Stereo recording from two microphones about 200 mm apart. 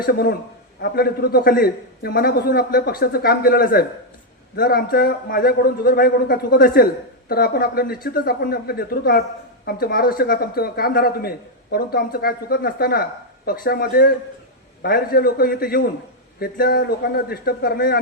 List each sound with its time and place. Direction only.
0.0 s a man's voice: 50° left (ahead or behind)